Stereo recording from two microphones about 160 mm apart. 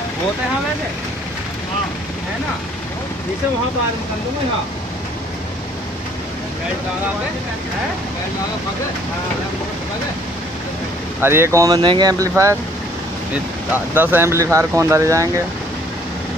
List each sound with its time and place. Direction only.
11.1 s speech: 15° right (ahead or behind)
13.9 s speech: 15° right (ahead or behind)